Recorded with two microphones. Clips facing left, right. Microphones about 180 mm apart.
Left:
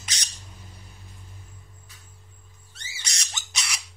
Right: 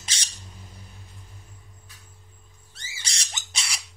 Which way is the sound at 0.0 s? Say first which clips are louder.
Even; 30° right (ahead or behind).